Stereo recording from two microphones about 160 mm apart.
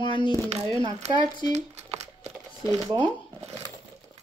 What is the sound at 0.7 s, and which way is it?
Speech, 25° right (ahead or behind).